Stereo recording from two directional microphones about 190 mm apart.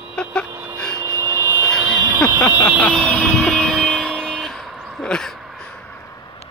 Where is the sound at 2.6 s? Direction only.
10° left (ahead or behind).